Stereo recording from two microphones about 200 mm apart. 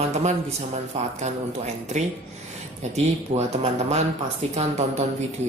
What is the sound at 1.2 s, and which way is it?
A woman's voice, 35° right (ahead or behind).